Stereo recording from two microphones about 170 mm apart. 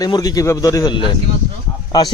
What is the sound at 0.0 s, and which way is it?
A man's voice, 20° left (ahead or behind).